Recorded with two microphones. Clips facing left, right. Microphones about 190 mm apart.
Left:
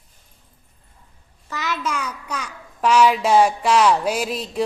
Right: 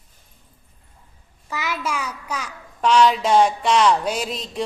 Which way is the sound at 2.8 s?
5° left (ahead or behind).